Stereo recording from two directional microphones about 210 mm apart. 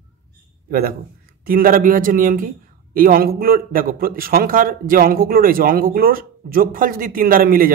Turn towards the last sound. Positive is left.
turn(degrees=-45)  # may be behind; listen again after turning